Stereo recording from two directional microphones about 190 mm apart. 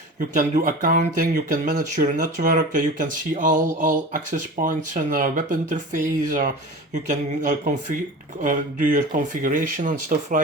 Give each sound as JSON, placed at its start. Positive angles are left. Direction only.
{"t": 0.2, "sound": "speech", "side_deg": -45}